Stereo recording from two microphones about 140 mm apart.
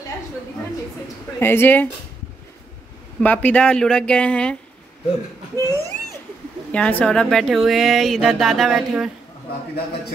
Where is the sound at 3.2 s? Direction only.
10° left (ahead or behind).